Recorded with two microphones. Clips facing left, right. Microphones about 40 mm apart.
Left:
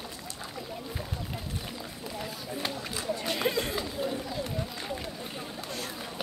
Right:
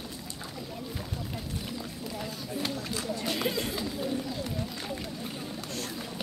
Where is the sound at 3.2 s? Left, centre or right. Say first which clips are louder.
Left 2 dB; centre.